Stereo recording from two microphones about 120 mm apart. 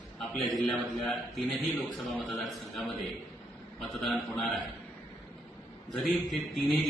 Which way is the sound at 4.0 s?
Centre (ahead or behind).